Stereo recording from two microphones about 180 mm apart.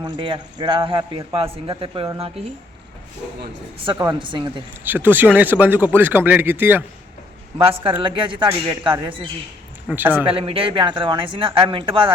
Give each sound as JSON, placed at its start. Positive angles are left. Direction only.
{"t": 0.0, "sound": "a man's voice", "side_deg": -25}
{"t": 3.8, "sound": "a man's voice", "side_deg": -20}
{"t": 4.8, "sound": "a man's voice", "side_deg": -10}
{"t": 7.6, "sound": "a man's voice", "side_deg": -35}
{"t": 9.9, "sound": "a man's voice", "side_deg": -10}
{"t": 10.2, "sound": "a man's voice", "side_deg": -30}